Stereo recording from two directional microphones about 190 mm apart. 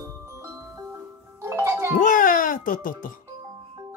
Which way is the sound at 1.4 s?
15° right (ahead or behind).